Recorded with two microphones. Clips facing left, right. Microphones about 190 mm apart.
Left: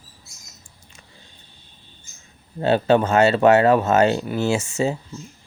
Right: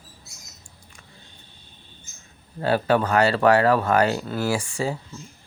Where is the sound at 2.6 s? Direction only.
25° left (ahead or behind).